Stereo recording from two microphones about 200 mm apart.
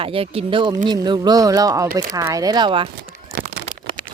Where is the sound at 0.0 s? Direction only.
30° right (ahead or behind).